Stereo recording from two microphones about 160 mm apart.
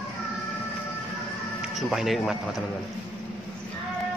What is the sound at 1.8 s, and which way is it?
Speech, centre (ahead or behind).